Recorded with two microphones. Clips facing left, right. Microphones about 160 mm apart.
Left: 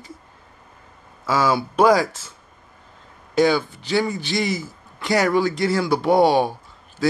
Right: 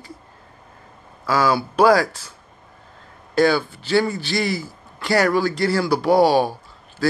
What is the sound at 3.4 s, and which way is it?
A man's voice, 20° left (ahead or behind).